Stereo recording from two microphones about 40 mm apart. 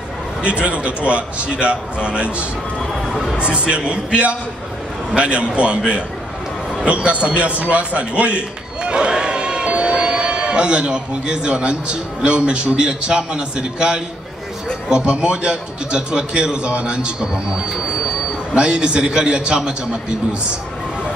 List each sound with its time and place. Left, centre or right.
0.4 s a man's voice: right
3.1 s a sound: centre
3.3 s a man's voice: right
6.9 s a man's voice: right